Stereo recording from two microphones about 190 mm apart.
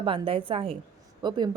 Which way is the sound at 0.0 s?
30° right (ahead or behind).